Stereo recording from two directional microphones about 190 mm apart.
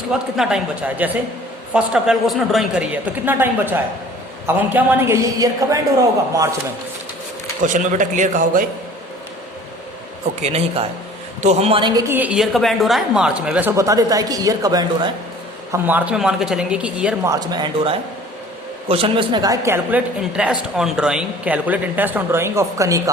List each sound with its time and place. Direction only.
0.1 s a woman's voice: 5° right (ahead or behind)
7.6 s a man's voice: 40° right (ahead or behind)
10.4 s a man's voice: 35° right (ahead or behind)
15.7 s a woman's voice: 10° right (ahead or behind)
17.2 s a woman's voice: 20° right (ahead or behind)